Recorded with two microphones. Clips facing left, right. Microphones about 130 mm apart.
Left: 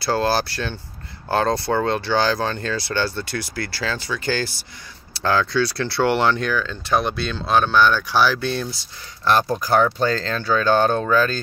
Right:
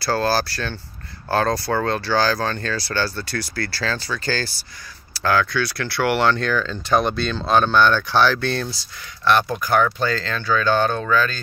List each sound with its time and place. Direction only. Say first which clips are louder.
0.0 s speech: even; 20° left (ahead or behind)
6.5 s speech: right 2 dB; 5° left (ahead or behind)
9.2 s speech: even; 35° left (ahead or behind)